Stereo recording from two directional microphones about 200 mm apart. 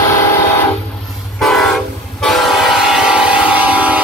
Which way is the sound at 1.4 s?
Centre (ahead or behind).